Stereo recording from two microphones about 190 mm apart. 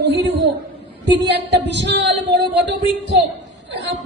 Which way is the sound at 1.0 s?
65° right (ahead or behind).